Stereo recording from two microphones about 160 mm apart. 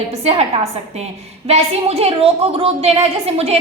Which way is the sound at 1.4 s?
40° right (ahead or behind).